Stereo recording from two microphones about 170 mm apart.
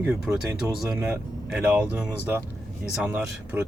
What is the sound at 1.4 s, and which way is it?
Speech, 5° right (ahead or behind).